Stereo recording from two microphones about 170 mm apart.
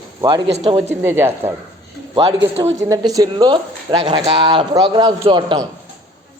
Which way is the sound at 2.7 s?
20° right (ahead or behind).